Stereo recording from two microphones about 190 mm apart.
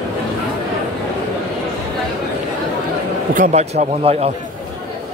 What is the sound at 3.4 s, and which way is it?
Speech, 40° right (ahead or behind).